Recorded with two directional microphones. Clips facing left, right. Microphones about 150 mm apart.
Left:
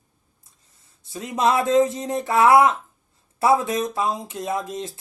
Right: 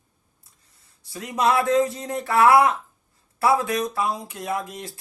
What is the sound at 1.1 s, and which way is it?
Speech, 20° left (ahead or behind).